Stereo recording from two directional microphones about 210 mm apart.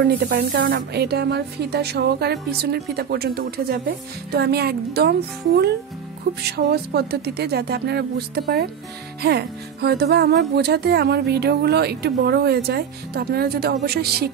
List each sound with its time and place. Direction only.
0.0 s speech: 50° right (ahead or behind)
6.5 s speech: 50° right (ahead or behind)
9.2 s speech: 50° right (ahead or behind)